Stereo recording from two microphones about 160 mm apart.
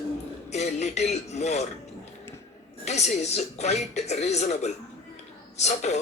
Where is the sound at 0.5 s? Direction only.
45° left (ahead or behind).